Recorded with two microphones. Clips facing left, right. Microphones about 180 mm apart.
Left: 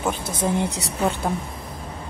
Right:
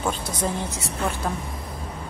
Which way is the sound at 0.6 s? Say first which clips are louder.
Left 3 dB; 70° left (ahead or behind).